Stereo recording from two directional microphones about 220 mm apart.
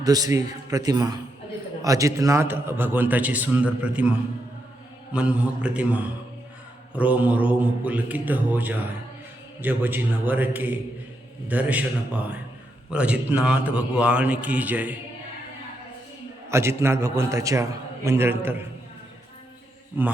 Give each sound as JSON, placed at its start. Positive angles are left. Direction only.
{"t": 0.0, "sound": "a man's voice", "side_deg": -15}
{"t": 5.1, "sound": "a man's voice", "side_deg": -5}
{"t": 16.5, "sound": "a man's voice", "side_deg": -10}
{"t": 20.0, "sound": "a man's voice", "side_deg": -10}